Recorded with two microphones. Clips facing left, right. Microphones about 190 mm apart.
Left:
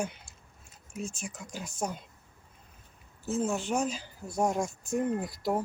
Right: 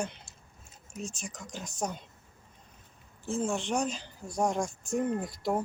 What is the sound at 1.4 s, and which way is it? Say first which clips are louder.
Speech: even; 5° left (ahead or behind).